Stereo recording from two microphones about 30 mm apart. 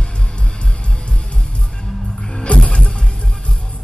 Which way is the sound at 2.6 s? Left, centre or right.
Left.